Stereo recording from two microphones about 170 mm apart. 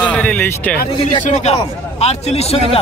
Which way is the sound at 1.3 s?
40° left (ahead or behind).